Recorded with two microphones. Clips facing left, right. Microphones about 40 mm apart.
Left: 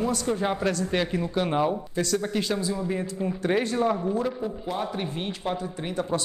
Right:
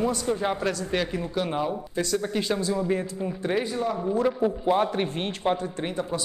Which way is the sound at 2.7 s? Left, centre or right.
Centre.